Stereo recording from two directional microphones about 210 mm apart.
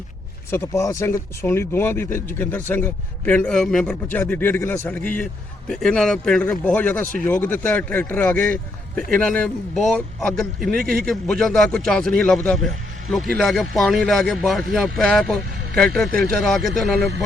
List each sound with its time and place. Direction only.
0.5 s a man's voice: 15° left (ahead or behind)
10.8 s a man's voice: 45° right (ahead or behind)
11.0 s speech: centre (ahead or behind)